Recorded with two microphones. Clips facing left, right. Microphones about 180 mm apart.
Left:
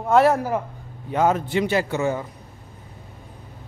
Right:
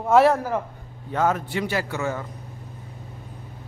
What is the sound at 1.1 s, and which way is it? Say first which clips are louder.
A man's voice: left 3 dB; 20° left (ahead or behind).